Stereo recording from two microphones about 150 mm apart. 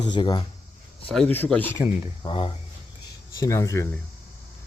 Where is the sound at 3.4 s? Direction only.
20° left (ahead or behind).